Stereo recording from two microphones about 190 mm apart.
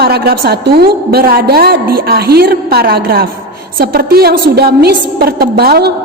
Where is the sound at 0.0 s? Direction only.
55° right (ahead or behind).